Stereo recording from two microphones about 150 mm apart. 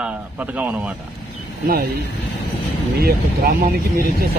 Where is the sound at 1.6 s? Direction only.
90° right.